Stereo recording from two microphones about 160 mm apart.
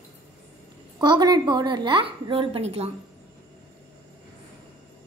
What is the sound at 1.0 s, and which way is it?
A woman's voice, 25° right (ahead or behind).